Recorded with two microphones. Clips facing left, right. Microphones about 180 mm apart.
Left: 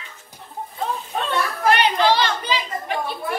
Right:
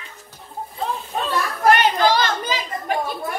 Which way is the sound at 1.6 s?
45° right (ahead or behind).